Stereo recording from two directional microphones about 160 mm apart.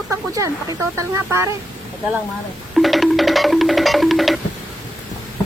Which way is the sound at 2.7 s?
Centre (ahead or behind).